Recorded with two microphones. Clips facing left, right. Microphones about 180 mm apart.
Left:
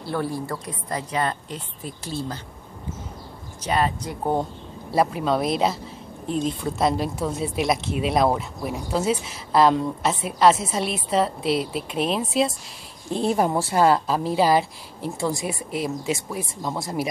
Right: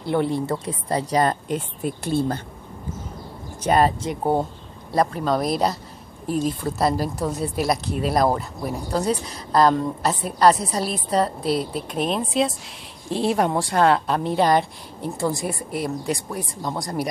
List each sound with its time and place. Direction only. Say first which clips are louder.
0.0 s a woman's voice: right 5 dB; 20° right (ahead or behind); by 1.3 s 35° right (ahead or behind)
1.5 s speech: right 9 dB; 60° right (ahead or behind)
3.6 s speech: right 5 dB; 45° right (ahead or behind)
4.0 s speech: right 3 dB; 15° right (ahead or behind)
4.9 s speech: even; 5° left (ahead or behind)